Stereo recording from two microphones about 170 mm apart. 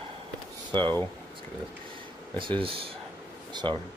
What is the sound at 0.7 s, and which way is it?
Speech, 25° right (ahead or behind).